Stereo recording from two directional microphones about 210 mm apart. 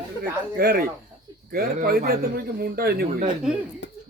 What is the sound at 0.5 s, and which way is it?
Speech, 45° right (ahead or behind).